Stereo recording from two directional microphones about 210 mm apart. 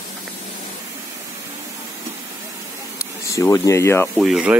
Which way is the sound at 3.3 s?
15° left (ahead or behind).